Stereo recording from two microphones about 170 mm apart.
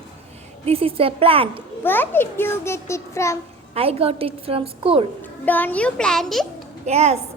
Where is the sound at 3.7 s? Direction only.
35° right (ahead or behind).